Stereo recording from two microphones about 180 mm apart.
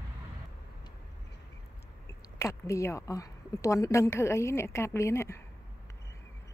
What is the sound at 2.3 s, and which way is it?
A woman's voice, 15° left (ahead or behind).